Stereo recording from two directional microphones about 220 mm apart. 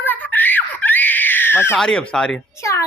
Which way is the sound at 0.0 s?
10° left (ahead or behind).